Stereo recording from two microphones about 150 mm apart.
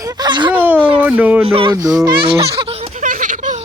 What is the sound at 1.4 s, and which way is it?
Speech, 35° right (ahead or behind).